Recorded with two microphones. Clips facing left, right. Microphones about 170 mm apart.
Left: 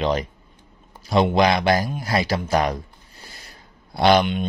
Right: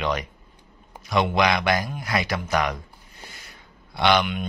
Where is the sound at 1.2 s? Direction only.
30° left (ahead or behind).